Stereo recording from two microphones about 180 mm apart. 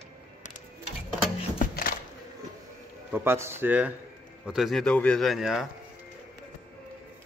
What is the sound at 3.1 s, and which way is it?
A man's voice, 15° right (ahead or behind).